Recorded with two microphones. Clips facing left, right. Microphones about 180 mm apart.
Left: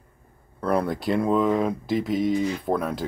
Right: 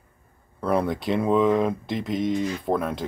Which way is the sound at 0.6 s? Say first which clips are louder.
Even; centre (ahead or behind).